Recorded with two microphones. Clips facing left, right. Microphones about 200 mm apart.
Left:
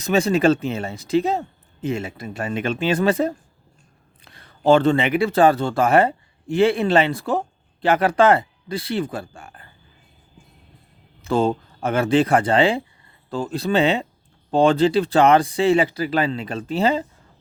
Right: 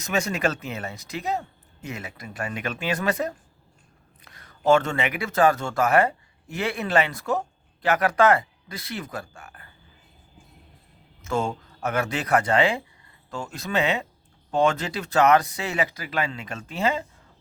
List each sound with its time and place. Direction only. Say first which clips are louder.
0.0 s speech: left 8 dB; 30° left (ahead or behind)
11.2 s speech: left 7 dB; 30° left (ahead or behind)